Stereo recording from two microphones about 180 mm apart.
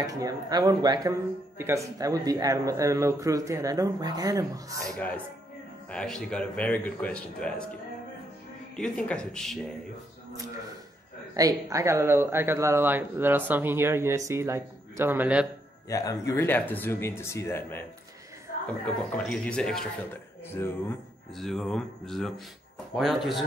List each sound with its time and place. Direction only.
0.0 s speech: 20° right (ahead or behind)
4.8 s speech: 5° left (ahead or behind)
8.7 s speech: 5° left (ahead or behind)
11.3 s speech: 20° right (ahead or behind)
15.9 s speech: 20° left (ahead or behind)
18.9 s speech: 5° left (ahead or behind)
21.4 s speech: centre (ahead or behind)